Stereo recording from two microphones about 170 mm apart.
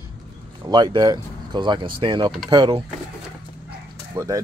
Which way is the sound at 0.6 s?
25° right (ahead or behind).